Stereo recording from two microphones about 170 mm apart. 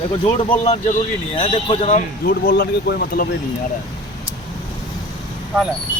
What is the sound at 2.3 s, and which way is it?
Speech, 65° left (ahead or behind).